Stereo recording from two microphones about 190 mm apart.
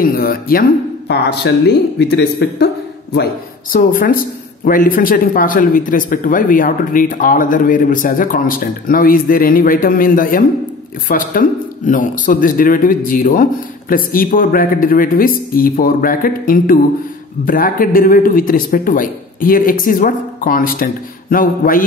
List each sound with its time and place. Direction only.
0.0 s speech: 50° left (ahead or behind)
3.7 s speech: 45° left (ahead or behind)